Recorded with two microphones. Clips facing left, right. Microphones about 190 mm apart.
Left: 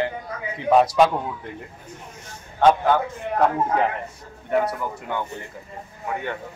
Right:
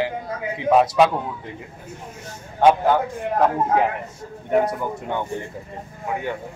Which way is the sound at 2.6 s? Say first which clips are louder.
Right 1 dB; 10° right (ahead or behind).